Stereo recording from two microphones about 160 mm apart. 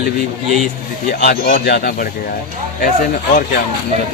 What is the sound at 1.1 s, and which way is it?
Speech, 70° left (ahead or behind).